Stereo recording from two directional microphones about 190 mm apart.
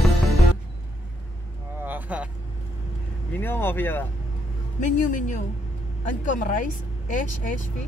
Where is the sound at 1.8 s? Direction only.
10° right (ahead or behind).